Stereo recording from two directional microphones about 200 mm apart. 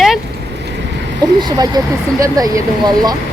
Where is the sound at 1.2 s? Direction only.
20° right (ahead or behind).